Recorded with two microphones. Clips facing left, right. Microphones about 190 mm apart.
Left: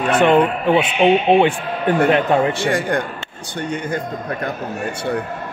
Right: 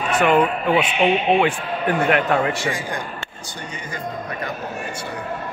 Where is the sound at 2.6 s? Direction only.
65° left (ahead or behind).